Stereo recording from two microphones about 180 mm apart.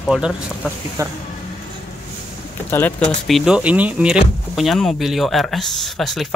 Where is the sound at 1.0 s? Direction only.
20° right (ahead or behind).